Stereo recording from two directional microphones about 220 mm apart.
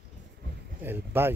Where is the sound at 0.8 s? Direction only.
10° right (ahead or behind).